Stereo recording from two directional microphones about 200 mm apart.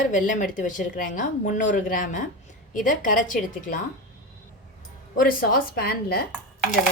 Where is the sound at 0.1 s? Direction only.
40° left (ahead or behind).